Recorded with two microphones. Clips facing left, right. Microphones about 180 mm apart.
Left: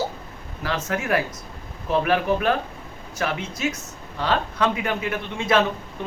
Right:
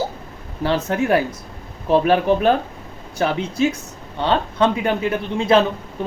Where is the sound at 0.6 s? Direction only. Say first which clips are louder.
Right 7 dB; 30° right (ahead or behind).